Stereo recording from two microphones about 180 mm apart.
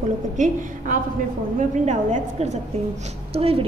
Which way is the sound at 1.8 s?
40° right (ahead or behind).